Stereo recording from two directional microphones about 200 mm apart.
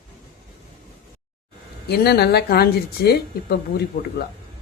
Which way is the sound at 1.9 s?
55° left (ahead or behind).